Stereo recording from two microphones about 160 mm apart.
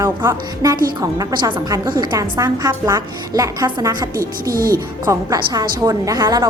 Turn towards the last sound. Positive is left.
turn(degrees=-25)  # may be behind; listen again after turning